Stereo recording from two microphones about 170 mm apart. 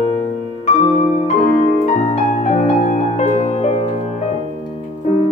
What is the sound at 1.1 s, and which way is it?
Music, 45° left (ahead or behind).